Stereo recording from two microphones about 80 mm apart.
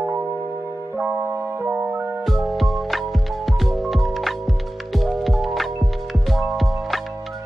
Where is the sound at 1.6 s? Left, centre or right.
Right.